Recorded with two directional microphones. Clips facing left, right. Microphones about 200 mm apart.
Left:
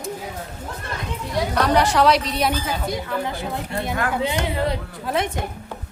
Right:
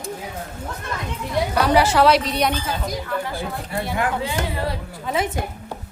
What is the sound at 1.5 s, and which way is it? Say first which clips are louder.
A woman's voice: right 1 dB; 5° right (ahead or behind).